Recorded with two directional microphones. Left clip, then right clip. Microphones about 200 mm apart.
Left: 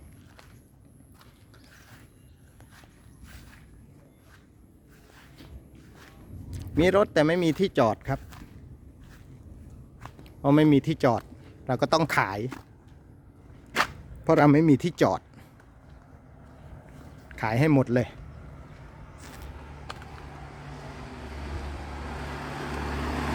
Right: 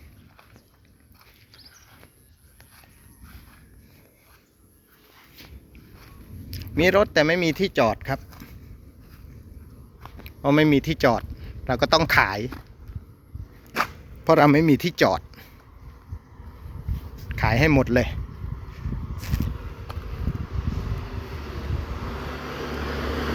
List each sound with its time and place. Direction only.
6.5 s speech: 15° left (ahead or behind)
10.2 s speech: 15° left (ahead or behind)
14.3 s speech: 10° left (ahead or behind)
17.2 s speech: 10° left (ahead or behind)
22.2 s vehicle: 60° left (ahead or behind)